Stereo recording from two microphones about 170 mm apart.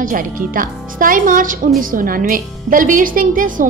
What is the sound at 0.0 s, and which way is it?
A woman's voice, 55° right (ahead or behind).